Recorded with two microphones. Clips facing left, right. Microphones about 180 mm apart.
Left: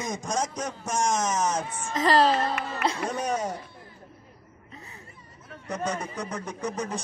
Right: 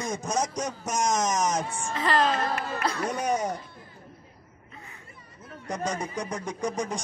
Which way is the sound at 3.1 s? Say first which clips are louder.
Right 1 dB; 10° right (ahead or behind).